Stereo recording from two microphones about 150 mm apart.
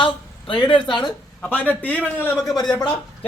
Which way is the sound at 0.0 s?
35° left (ahead or behind).